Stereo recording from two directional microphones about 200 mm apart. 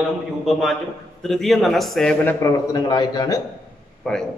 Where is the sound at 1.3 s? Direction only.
Centre (ahead or behind).